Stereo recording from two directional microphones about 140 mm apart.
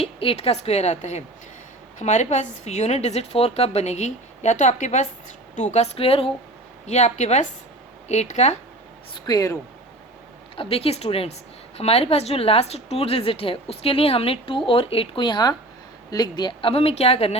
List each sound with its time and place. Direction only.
0.0 s a woman's voice: 45° left (ahead or behind)
6.8 s a woman's voice: 55° left (ahead or behind)
9.1 s speech: 30° left (ahead or behind)
10.5 s a woman's voice: 40° left (ahead or behind)